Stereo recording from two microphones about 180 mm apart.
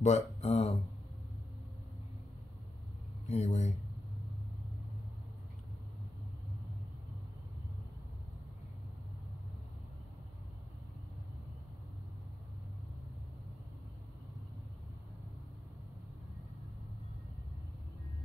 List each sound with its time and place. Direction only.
0.0 s speech: 40° left (ahead or behind)
3.3 s speech: 35° left (ahead or behind)